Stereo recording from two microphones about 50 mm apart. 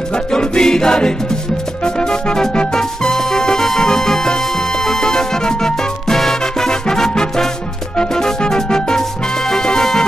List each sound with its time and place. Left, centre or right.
0.1 s music: centre